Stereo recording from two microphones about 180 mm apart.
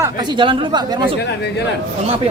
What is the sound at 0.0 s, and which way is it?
Speech, 25° right (ahead or behind).